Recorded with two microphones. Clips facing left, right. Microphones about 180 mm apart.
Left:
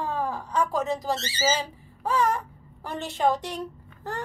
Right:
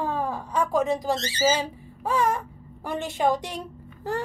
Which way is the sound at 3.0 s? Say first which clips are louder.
Even; 10° right (ahead or behind).